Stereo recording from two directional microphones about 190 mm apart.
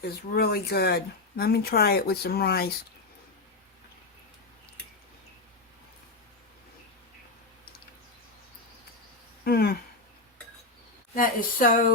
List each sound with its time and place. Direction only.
0.0 s speech: 55° left (ahead or behind)
9.4 s a sound: 55° left (ahead or behind)
11.1 s speech: 45° left (ahead or behind)